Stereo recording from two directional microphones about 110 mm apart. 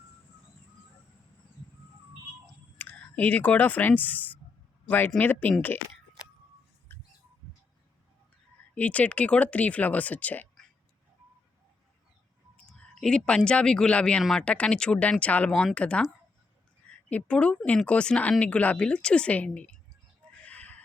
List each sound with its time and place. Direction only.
2.7 s speech: 15° left (ahead or behind)
6.9 s mouse: 20° left (ahead or behind)
8.7 s speech: 15° left (ahead or behind)
12.6 s speech: 5° left (ahead or behind)
20.4 s chicken: 15° left (ahead or behind)